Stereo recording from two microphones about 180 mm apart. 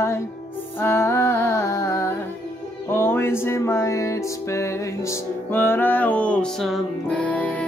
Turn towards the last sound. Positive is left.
turn(degrees=5)  # may be behind; listen again after turning